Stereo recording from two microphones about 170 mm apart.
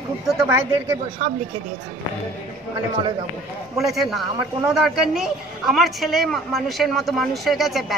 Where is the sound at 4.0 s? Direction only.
Centre (ahead or behind).